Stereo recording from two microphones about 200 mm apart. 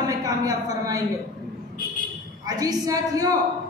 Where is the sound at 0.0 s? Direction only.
20° right (ahead or behind).